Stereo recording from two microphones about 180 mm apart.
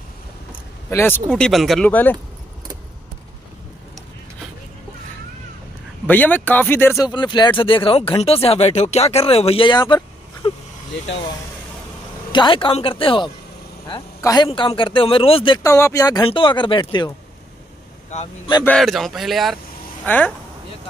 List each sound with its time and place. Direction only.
0.8 s speech: 15° left (ahead or behind)
1.3 s speech: centre (ahead or behind)
6.0 s speech: 10° left (ahead or behind)
12.3 s speech: 25° left (ahead or behind)
18.1 s speech: 40° left (ahead or behind)
18.7 s speech: centre (ahead or behind)